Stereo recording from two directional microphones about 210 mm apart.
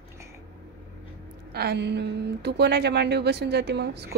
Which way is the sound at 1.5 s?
50° right (ahead or behind).